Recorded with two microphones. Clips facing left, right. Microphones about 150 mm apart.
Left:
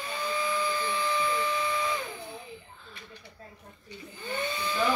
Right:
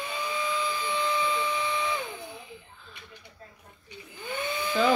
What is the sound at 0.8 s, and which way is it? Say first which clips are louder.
Vacuum cleaner: right 1 dB; 20° right (ahead or behind).